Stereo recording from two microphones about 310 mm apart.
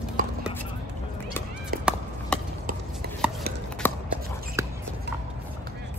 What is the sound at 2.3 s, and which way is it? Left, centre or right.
Chop, centre.